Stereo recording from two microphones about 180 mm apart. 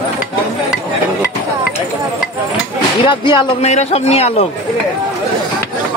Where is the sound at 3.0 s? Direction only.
30° left (ahead or behind).